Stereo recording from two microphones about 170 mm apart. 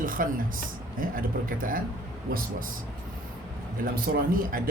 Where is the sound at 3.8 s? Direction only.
55° right (ahead or behind).